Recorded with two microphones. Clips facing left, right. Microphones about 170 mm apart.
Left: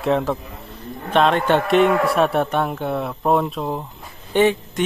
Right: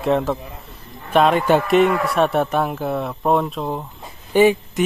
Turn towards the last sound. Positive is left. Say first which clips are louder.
# right 2 dB
turn(degrees=-10)  # may be behind; listen again after turning